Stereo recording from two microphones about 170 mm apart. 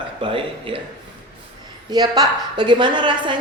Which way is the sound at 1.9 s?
25° right (ahead or behind).